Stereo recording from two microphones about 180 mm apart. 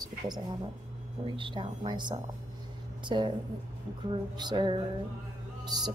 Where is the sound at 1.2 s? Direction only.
25° right (ahead or behind).